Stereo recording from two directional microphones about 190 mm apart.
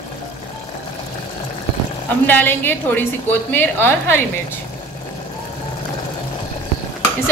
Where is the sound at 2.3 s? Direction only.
10° left (ahead or behind).